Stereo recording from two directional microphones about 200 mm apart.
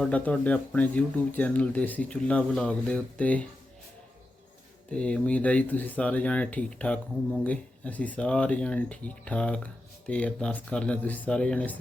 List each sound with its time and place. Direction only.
0.0 s speech: 5° left (ahead or behind)
4.9 s speech: 5° left (ahead or behind)